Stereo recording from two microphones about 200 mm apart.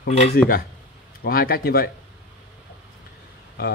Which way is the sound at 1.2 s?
50° left (ahead or behind).